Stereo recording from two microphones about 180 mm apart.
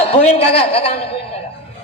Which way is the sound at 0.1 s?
35° left (ahead or behind).